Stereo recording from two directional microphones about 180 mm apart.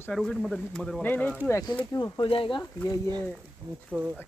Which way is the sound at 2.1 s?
30° left (ahead or behind).